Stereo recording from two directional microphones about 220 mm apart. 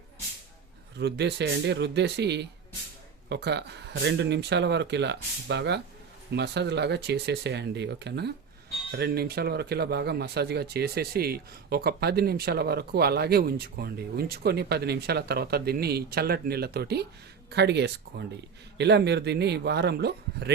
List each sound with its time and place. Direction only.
0.9 s speech: 50° right (ahead or behind)